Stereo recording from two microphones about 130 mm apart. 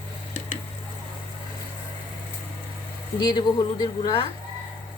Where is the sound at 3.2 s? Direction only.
35° left (ahead or behind).